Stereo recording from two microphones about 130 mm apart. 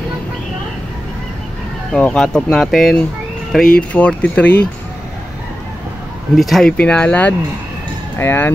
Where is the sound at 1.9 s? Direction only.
5° left (ahead or behind).